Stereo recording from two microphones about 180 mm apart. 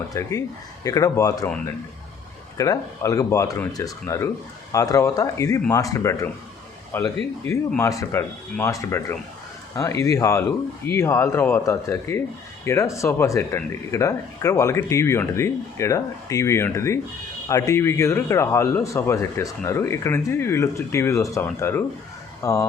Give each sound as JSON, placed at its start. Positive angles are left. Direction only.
{"t": 0.1, "sound": "speech", "side_deg": 15}
{"t": 2.6, "sound": "speech", "side_deg": 20}